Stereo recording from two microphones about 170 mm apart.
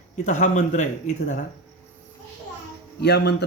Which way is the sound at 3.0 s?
75° left (ahead or behind).